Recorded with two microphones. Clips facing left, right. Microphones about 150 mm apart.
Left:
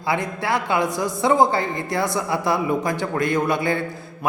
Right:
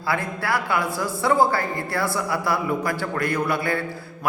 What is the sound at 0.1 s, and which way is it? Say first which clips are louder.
A man's voice: left 2 dB; 20° left (ahead or behind).